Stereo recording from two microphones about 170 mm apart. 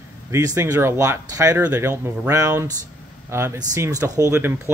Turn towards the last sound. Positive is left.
turn(degrees=-15)  # may be behind; listen again after turning